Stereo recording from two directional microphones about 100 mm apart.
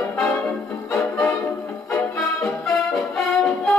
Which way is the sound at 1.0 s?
30° left (ahead or behind).